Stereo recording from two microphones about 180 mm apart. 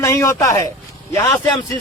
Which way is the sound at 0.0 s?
15° left (ahead or behind).